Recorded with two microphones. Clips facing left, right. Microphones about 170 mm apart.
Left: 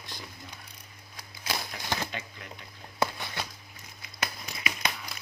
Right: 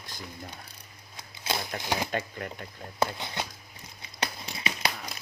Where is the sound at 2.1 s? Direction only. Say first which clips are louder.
Right 8 dB; 55° right (ahead or behind).